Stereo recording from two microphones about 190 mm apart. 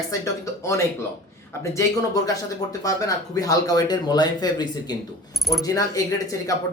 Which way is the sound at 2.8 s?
20° left (ahead or behind).